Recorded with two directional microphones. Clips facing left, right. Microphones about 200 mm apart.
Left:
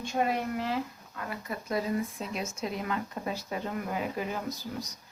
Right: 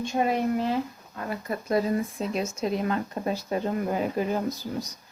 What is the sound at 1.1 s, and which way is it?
Speech, 35° right (ahead or behind).